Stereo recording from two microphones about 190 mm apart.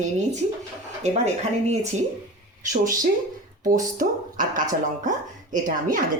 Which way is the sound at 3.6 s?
45° right (ahead or behind).